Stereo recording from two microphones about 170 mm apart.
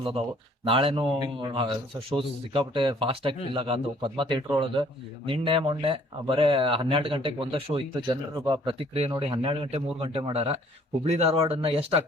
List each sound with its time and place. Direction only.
0.7 s a man's voice: 30° right (ahead or behind)